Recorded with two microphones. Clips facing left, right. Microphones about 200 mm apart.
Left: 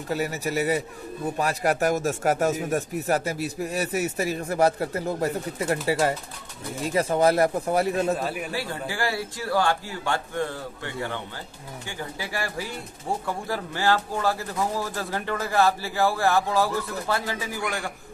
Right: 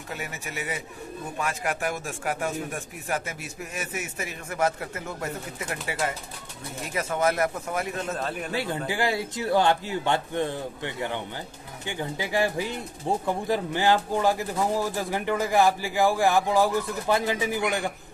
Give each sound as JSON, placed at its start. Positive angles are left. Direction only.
{"t": 0.1, "sound": "a man's voice", "side_deg": 35}
{"t": 8.2, "sound": "speech", "side_deg": 5}
{"t": 8.5, "sound": "a man's voice", "side_deg": -20}